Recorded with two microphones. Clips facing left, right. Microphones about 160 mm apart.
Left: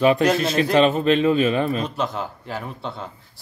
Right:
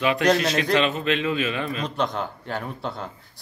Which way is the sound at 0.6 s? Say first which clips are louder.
Left 5 dB; 35° left (ahead or behind).